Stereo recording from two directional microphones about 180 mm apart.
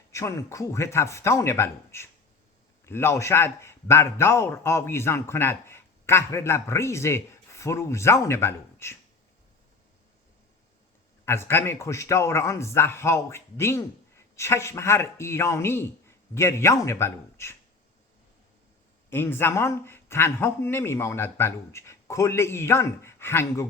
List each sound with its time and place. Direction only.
0.1 s a man's voice: 15° left (ahead or behind)
11.3 s a man's voice: 15° left (ahead or behind)
19.1 s a man's voice: 10° left (ahead or behind)